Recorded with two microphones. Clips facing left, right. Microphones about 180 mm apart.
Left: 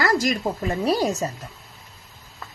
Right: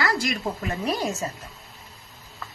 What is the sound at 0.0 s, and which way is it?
Speech, 45° left (ahead or behind).